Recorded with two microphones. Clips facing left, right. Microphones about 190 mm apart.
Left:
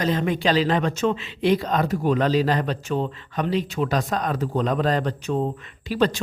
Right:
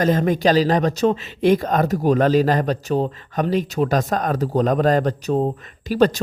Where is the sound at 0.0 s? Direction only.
45° right (ahead or behind).